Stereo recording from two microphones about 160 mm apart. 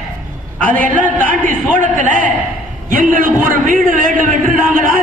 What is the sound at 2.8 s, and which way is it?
A man's voice, 55° right (ahead or behind).